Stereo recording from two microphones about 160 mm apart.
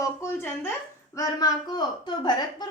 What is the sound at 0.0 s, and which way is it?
A woman's voice, 15° left (ahead or behind).